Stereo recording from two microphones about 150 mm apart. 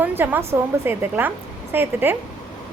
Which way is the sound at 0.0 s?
10° right (ahead or behind).